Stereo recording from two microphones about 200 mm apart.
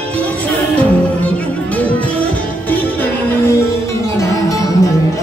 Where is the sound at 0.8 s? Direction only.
5° left (ahead or behind).